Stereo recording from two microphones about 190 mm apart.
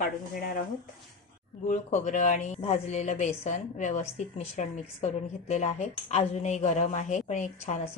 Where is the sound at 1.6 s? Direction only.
40° left (ahead or behind).